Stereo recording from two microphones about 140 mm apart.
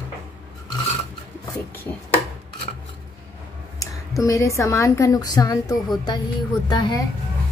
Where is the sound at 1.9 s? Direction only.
20° left (ahead or behind).